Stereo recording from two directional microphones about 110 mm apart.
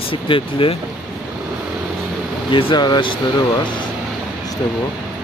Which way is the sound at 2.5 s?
45° left (ahead or behind).